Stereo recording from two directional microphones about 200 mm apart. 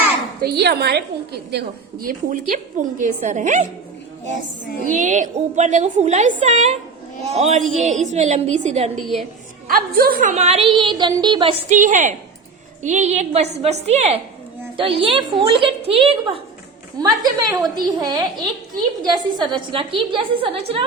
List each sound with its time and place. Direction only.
0.4 s a woman's voice: 55° right (ahead or behind); by 3.7 s 40° right (ahead or behind)
4.9 s a woman's voice: 40° right (ahead or behind)
9.6 s a woman's voice: 45° right (ahead or behind); by 11.5 s 25° right (ahead or behind)
11.7 s a woman's voice: 40° right (ahead or behind)
17.0 s a woman's voice: 20° right (ahead or behind)